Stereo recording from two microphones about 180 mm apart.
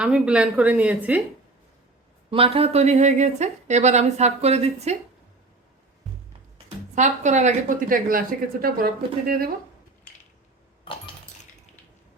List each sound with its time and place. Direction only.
0.0 s speech: 5° right (ahead or behind)
2.3 s speech: 30° right (ahead or behind)
6.9 s speech: 40° right (ahead or behind)